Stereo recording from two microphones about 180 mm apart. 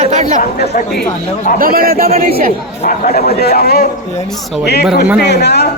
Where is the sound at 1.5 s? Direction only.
55° right (ahead or behind).